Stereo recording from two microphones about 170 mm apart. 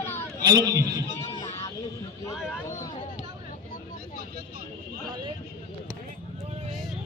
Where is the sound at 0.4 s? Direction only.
25° right (ahead or behind).